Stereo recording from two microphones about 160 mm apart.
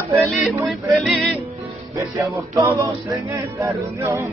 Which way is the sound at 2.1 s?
20° right (ahead or behind).